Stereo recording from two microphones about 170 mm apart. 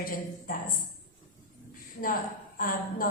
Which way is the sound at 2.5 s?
55° left (ahead or behind).